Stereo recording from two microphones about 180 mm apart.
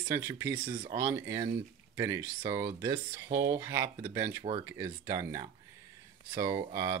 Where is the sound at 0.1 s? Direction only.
15° right (ahead or behind).